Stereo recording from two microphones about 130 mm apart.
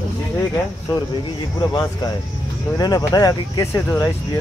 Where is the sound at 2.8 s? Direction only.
30° left (ahead or behind).